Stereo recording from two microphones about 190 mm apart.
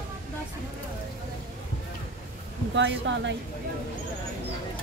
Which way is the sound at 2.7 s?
70° right (ahead or behind).